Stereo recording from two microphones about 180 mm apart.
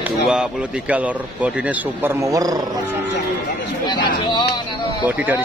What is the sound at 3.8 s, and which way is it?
Speech, 25° left (ahead or behind).